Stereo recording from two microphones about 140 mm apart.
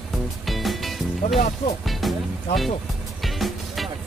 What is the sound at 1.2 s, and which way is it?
Speech, 50° left (ahead or behind).